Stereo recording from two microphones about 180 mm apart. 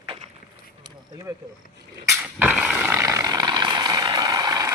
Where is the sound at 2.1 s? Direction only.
5° right (ahead or behind).